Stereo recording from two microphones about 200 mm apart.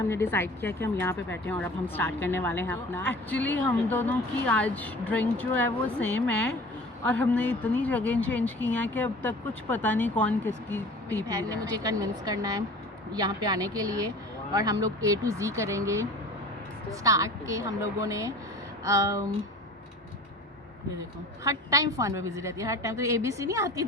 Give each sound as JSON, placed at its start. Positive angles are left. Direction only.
{"t": 0.1, "sound": "a woman's voice", "side_deg": 10}
{"t": 11.3, "sound": "a woman's voice", "side_deg": -20}
{"t": 21.4, "sound": "a woman's voice", "side_deg": -15}